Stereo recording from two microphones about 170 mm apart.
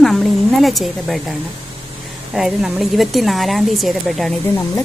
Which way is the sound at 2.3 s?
Centre (ahead or behind).